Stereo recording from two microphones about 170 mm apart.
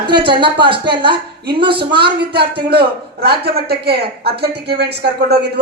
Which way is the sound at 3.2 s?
70° right (ahead or behind).